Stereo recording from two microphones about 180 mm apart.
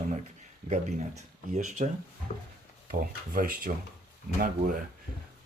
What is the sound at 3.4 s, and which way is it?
Speech, 50° right (ahead or behind).